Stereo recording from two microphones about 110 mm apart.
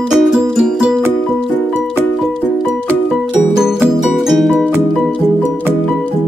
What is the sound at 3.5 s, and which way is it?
Music, 5° right (ahead or behind).